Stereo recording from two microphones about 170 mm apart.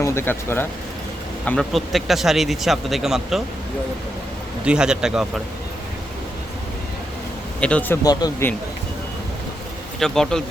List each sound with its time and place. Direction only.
0.0 s speech: 15° left (ahead or behind)
1.5 s speech: centre (ahead or behind)
4.6 s speech: 5° right (ahead or behind)
7.6 s speech: 10° left (ahead or behind)
8.0 s speech: 25° left (ahead or behind)
10.0 s speech: 5° left (ahead or behind)